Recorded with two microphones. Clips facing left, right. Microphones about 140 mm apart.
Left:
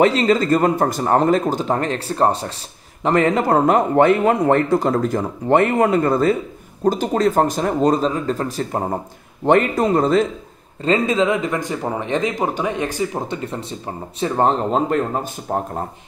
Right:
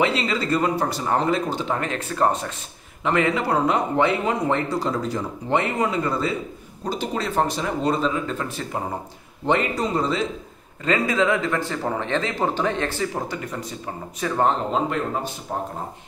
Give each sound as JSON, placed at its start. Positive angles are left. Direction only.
{"t": 0.0, "sound": "a man's voice", "side_deg": 45}
{"t": 9.5, "sound": "a man's voice", "side_deg": 50}
{"t": 10.8, "sound": "speech", "side_deg": 25}
{"t": 15.5, "sound": "a man's voice", "side_deg": 50}